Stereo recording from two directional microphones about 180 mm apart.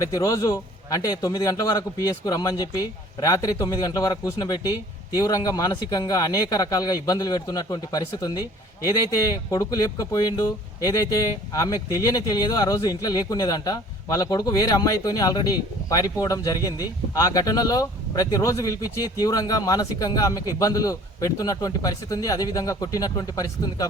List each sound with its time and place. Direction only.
0.0 s speech: 20° left (ahead or behind)